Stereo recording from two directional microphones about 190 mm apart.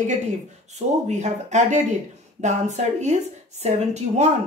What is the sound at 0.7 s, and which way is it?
A woman's voice, 35° right (ahead or behind).